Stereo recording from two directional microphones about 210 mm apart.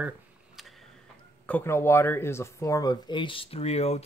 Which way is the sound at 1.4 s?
10° left (ahead or behind).